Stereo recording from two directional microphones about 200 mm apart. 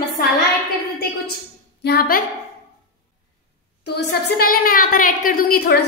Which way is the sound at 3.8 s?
55° left (ahead or behind).